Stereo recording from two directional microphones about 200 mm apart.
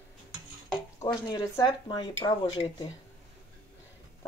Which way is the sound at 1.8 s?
25° left (ahead or behind).